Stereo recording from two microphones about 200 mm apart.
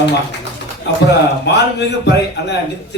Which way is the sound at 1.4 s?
60° left (ahead or behind).